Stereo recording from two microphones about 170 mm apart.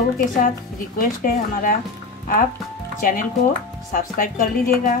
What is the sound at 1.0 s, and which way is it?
Speech, 60° left (ahead or behind).